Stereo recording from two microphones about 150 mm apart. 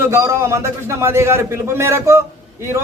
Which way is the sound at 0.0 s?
20° right (ahead or behind).